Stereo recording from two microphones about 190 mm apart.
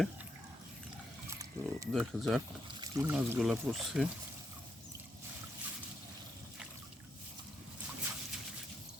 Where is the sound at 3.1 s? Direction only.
10° right (ahead or behind).